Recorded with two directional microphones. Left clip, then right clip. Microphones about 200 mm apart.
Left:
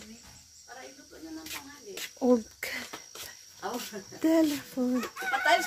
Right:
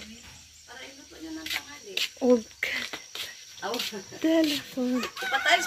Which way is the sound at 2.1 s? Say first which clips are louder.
Right 2 dB; 5° left (ahead or behind).